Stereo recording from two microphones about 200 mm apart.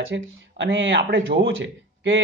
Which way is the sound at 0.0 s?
70° right (ahead or behind).